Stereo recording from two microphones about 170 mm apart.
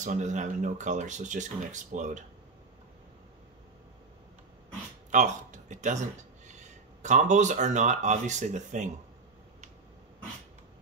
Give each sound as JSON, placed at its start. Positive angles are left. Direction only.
{"t": 0.0, "sound": "speech", "side_deg": -45}
{"t": 5.1, "sound": "speech", "side_deg": -45}